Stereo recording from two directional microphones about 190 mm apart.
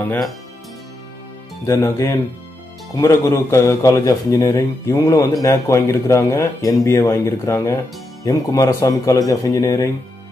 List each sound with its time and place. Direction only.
1.7 s a man's voice: 15° left (ahead or behind)